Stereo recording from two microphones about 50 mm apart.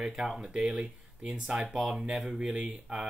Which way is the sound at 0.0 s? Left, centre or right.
Centre.